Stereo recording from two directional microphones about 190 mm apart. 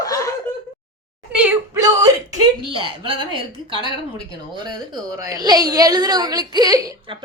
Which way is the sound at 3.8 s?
20° right (ahead or behind).